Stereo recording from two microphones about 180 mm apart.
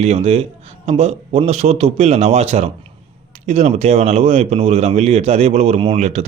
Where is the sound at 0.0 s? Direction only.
35° right (ahead or behind).